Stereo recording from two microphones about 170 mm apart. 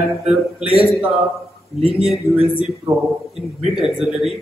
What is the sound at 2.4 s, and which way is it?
Speech, 35° left (ahead or behind).